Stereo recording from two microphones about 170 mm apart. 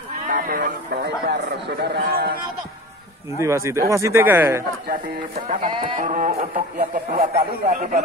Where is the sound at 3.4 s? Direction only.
15° right (ahead or behind).